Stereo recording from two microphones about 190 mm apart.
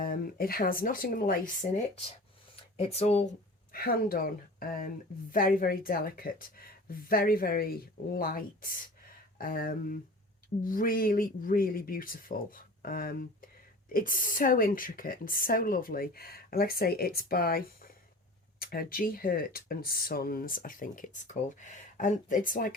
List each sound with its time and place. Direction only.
0.0 s speech: 50° left (ahead or behind)
2.7 s speech: 35° left (ahead or behind)
3.7 s speech: 50° left (ahead or behind)